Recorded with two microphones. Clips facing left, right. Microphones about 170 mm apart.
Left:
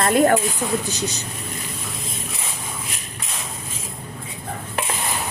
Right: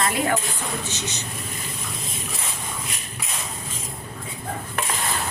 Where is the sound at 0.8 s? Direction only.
35° left (ahead or behind).